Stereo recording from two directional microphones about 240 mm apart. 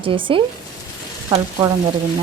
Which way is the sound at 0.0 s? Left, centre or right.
Right.